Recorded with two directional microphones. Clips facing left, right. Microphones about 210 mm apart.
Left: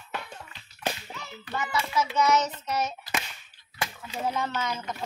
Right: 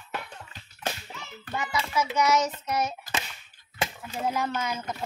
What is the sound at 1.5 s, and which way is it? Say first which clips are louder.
Child singing: even; 10° right (ahead or behind).